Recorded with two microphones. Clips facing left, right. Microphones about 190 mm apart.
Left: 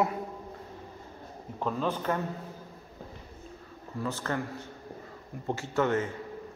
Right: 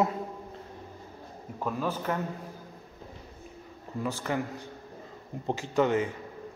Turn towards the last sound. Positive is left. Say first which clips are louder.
# right 2 dB
turn(degrees=-15)  # may be behind; listen again after turning